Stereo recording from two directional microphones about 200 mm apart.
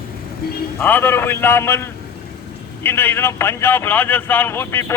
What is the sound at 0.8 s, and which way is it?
A man's voice, 10° left (ahead or behind).